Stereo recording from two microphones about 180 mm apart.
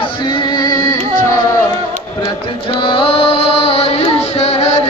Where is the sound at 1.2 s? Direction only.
15° left (ahead or behind).